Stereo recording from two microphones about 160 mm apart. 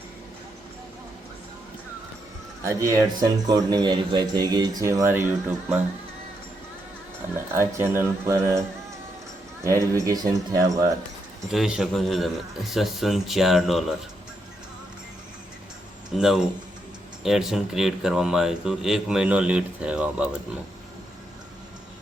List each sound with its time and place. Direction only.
2.6 s a man's voice: 20° right (ahead or behind)
7.5 s speech: 15° right (ahead or behind)
9.6 s a man's voice: 20° right (ahead or behind)
11.5 s speech: centre (ahead or behind)
16.1 s speech: 5° right (ahead or behind)